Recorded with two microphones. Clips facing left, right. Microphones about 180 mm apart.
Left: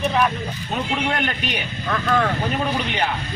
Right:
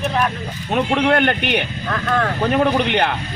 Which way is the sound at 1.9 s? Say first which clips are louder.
Left 1 dB; centre (ahead or behind).